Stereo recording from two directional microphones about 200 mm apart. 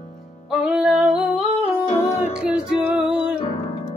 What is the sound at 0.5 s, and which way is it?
Female singing, 5° right (ahead or behind).